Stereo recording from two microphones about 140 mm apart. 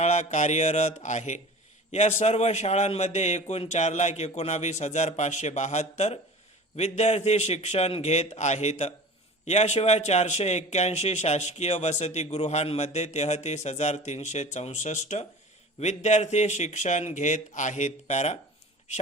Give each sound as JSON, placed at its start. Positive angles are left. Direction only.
{"t": 0.0, "sound": "a man's voice", "side_deg": 55}